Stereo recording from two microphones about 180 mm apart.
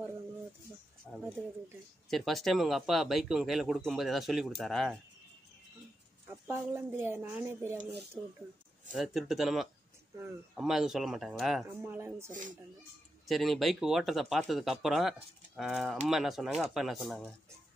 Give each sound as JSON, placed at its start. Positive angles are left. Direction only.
{"t": 1.1, "sound": "a sound", "side_deg": 10}
{"t": 2.0, "sound": "speech", "side_deg": 0}
{"t": 6.5, "sound": "a woman's voice", "side_deg": -15}
{"t": 8.9, "sound": "speech", "side_deg": 0}
{"t": 11.9, "sound": "a woman's voice", "side_deg": -10}
{"t": 12.3, "sound": "speech", "side_deg": -45}
{"t": 13.3, "sound": "speech", "side_deg": 0}